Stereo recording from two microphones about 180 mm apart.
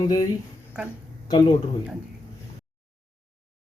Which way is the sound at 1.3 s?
25° left (ahead or behind).